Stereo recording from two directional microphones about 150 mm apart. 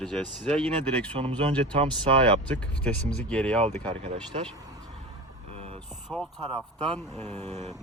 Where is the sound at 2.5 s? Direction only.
10° left (ahead or behind).